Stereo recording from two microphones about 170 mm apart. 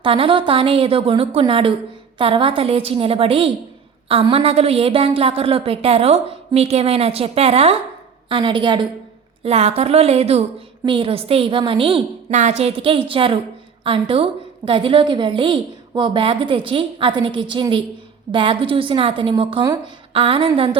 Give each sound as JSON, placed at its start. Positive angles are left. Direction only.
{"t": 0.0, "sound": "a woman's voice", "side_deg": -30}
{"t": 9.4, "sound": "a woman's voice", "side_deg": -35}